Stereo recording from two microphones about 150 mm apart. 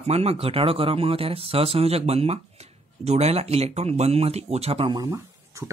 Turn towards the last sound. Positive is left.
turn(degrees=-20)  # may be behind; listen again after turning